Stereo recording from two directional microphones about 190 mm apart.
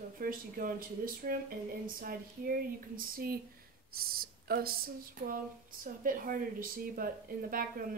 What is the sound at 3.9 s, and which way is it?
A woman's voice, 50° right (ahead or behind).